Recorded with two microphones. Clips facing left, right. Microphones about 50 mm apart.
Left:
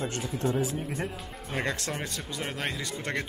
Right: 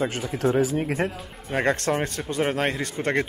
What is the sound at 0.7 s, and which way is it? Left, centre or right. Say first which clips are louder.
Speech: right 8 dB; right.